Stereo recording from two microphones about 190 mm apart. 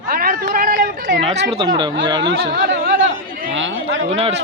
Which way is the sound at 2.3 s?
70° right (ahead or behind).